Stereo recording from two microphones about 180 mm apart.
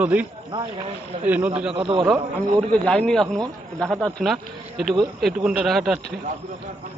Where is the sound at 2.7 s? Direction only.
5° left (ahead or behind).